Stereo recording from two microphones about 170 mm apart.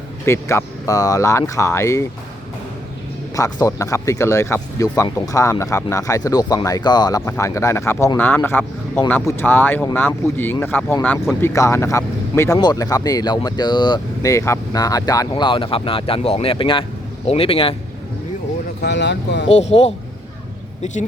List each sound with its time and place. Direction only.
0.3 s speech: 15° left (ahead or behind)
3.3 s speech: 20° left (ahead or behind)
18.8 s speech: 90° left
19.5 s speech: 40° left (ahead or behind)